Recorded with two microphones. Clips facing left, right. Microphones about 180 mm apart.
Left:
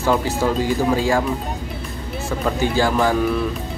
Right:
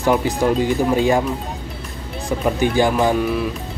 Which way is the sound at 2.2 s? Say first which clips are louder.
Right 3 dB; 15° right (ahead or behind).